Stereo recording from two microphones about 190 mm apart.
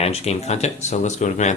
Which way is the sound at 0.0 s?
35° left (ahead or behind).